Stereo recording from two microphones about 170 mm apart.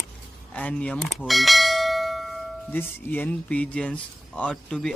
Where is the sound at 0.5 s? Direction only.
5° left (ahead or behind).